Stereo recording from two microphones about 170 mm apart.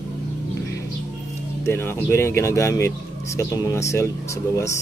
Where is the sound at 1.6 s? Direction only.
15° left (ahead or behind).